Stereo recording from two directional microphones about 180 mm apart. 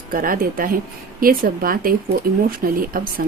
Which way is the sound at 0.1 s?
50° right (ahead or behind).